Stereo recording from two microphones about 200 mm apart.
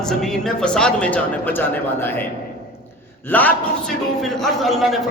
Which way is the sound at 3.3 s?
10° left (ahead or behind).